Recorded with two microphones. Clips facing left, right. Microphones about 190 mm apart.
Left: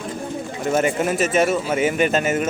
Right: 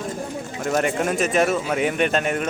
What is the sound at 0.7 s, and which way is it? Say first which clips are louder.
Speech: left 2 dB; 5° left (ahead or behind).